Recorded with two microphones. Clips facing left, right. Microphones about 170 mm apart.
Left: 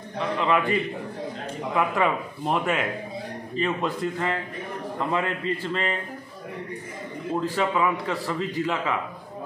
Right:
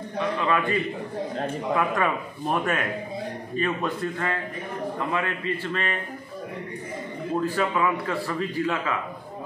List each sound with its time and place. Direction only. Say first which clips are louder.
0.4 s a man's voice: left 3 dB; 20° left (ahead or behind)
1.8 s a man's voice: left 4 dB; 15° left (ahead or behind)
7.4 s a man's voice: left 1 dB; 15° left (ahead or behind)